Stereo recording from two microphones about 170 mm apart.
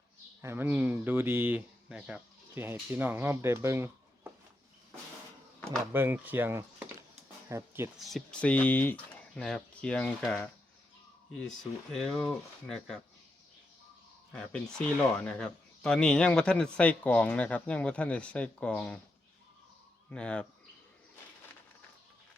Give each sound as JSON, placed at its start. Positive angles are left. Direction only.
{"t": 0.4, "sound": "speech", "side_deg": -10}
{"t": 5.9, "sound": "speech", "side_deg": -10}
{"t": 7.4, "sound": "a sound", "side_deg": -15}
{"t": 7.9, "sound": "speech", "side_deg": 0}
{"t": 14.3, "sound": "speech", "side_deg": 5}
{"t": 20.1, "sound": "speech", "side_deg": 5}